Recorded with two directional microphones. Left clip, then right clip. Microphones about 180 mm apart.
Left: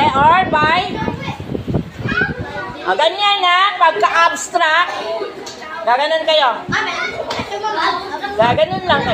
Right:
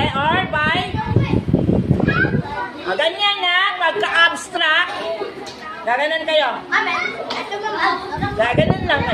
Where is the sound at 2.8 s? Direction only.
20° right (ahead or behind).